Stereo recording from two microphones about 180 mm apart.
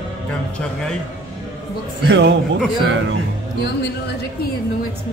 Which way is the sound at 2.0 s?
75° right (ahead or behind).